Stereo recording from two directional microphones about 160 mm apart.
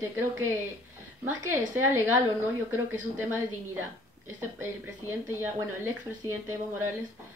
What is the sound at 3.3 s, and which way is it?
A woman's voice, 15° right (ahead or behind).